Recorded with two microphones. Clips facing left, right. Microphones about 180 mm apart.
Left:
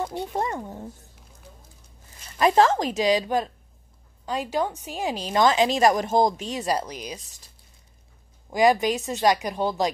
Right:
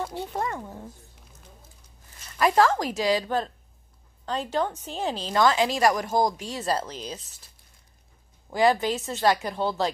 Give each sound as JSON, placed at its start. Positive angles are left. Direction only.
{"t": 0.0, "sound": "a woman's voice", "side_deg": 15}
{"t": 2.3, "sound": "a woman's voice", "side_deg": 20}
{"t": 8.5, "sound": "a woman's voice", "side_deg": 15}